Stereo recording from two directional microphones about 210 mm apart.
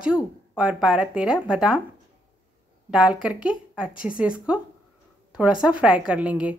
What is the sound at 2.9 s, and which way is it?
A woman's voice, 5° right (ahead or behind).